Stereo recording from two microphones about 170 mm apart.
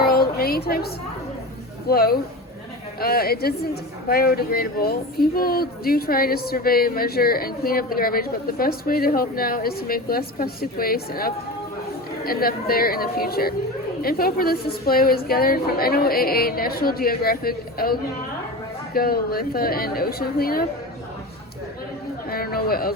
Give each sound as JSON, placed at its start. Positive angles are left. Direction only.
{"t": 0.0, "sound": "a woman's voice", "side_deg": 65}
{"t": 1.9, "sound": "speech", "side_deg": 65}
{"t": 22.3, "sound": "a sound", "side_deg": 60}